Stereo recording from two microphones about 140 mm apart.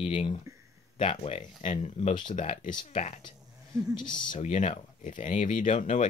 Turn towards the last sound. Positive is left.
turn(degrees=60)  # may be behind; listen again after turning